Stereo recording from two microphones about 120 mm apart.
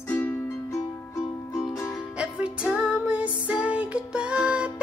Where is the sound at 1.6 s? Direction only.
25° left (ahead or behind).